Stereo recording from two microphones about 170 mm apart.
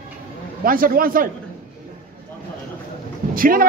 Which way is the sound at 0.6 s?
55° right (ahead or behind).